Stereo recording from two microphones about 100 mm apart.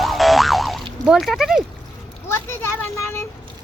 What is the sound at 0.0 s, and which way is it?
Boing, centre (ahead or behind).